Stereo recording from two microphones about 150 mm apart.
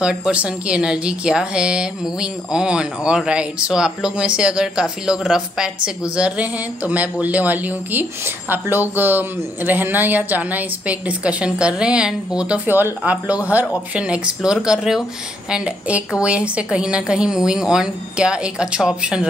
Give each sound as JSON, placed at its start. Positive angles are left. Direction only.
{"t": 0.0, "sound": "a woman's voice", "side_deg": -5}